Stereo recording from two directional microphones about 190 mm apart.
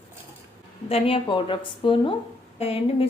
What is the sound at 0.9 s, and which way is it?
A woman's voice, 25° left (ahead or behind).